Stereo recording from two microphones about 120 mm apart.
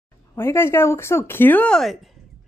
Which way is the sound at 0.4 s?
20° left (ahead or behind).